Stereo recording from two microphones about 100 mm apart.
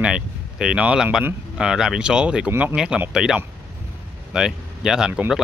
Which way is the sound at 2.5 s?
25° right (ahead or behind).